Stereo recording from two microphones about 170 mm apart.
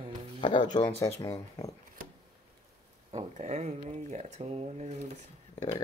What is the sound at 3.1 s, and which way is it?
Speech, 40° right (ahead or behind).